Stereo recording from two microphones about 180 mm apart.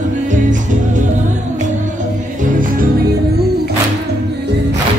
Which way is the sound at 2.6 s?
50° right (ahead or behind).